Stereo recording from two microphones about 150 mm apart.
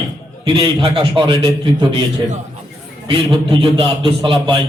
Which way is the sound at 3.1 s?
35° right (ahead or behind).